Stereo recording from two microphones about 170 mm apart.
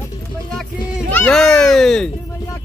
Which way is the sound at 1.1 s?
5° left (ahead or behind).